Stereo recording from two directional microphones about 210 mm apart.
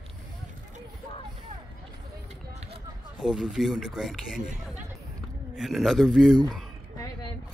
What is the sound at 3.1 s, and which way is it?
Speech, centre (ahead or behind).